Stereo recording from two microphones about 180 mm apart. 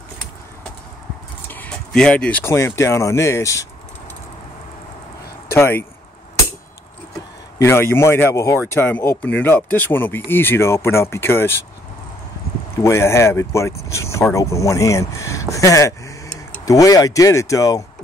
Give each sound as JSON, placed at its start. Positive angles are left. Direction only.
{"t": 1.5, "sound": "speech", "side_deg": 5}
{"t": 5.5, "sound": "speech", "side_deg": 15}
{"t": 7.5, "sound": "speech", "side_deg": 15}
{"t": 12.7, "sound": "speech", "side_deg": 15}